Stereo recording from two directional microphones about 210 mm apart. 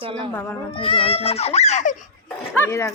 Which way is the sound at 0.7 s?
25° left (ahead or behind).